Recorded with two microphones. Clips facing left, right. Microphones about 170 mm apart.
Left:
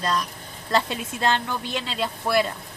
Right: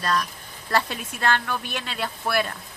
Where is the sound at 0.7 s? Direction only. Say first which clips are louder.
Left 1 dB; 20° left (ahead or behind).